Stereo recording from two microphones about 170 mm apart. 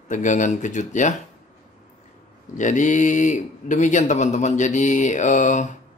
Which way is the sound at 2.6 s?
45° left (ahead or behind).